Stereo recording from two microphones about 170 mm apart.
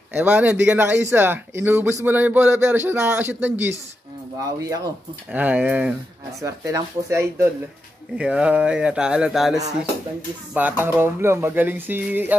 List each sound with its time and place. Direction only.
0.1 s speech: 10° right (ahead or behind)
5.3 s speech: 10° right (ahead or behind)